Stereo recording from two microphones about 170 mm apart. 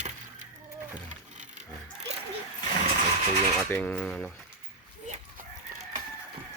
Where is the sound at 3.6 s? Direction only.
10° left (ahead or behind).